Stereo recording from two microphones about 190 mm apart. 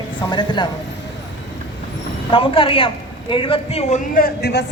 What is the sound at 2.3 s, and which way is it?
A man's voice, 30° left (ahead or behind).